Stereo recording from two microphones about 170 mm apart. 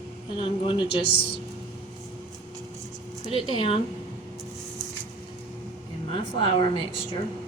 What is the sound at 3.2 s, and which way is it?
Speech, 30° left (ahead or behind).